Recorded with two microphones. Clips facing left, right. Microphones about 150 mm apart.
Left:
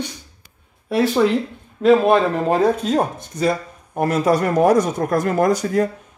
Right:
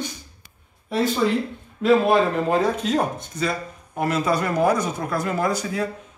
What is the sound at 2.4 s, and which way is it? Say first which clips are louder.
Speech: left 4 dB; 45° left (ahead or behind).